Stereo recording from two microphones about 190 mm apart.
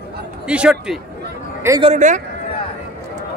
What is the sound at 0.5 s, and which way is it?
Speech, 5° right (ahead or behind).